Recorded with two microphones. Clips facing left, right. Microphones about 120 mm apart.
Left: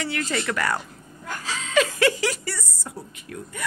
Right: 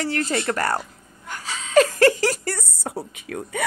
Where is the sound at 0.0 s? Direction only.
40° right (ahead or behind).